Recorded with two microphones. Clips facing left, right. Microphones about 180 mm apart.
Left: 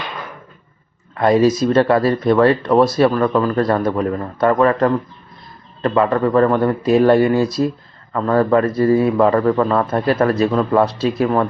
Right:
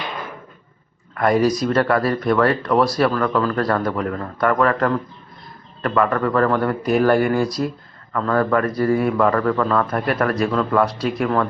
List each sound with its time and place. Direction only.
1.1 s speech: 25° left (ahead or behind)